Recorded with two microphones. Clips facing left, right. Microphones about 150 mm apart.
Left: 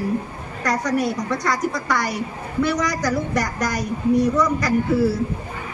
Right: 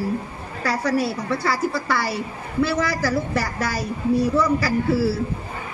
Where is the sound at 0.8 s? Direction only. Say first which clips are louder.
Even; 30° right (ahead or behind).